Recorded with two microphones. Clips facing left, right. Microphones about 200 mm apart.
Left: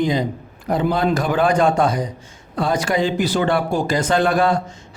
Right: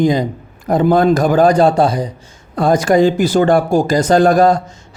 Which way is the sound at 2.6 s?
45° right (ahead or behind).